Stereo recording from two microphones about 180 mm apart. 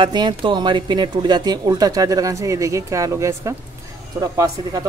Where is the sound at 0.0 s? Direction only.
25° right (ahead or behind).